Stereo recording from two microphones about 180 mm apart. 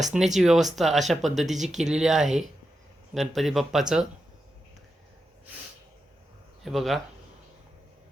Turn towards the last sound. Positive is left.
turn(degrees=0)  # may be behind; listen again after turning